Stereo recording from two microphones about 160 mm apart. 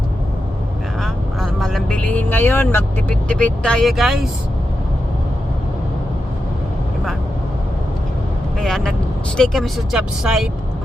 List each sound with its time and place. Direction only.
1.0 s speech: centre (ahead or behind)
8.6 s speech: centre (ahead or behind)